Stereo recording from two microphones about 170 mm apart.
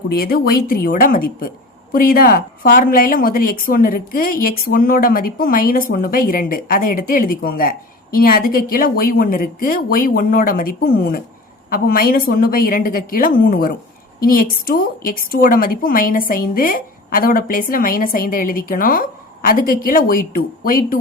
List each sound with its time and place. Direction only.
0.1 s a woman's voice: 65° left (ahead or behind)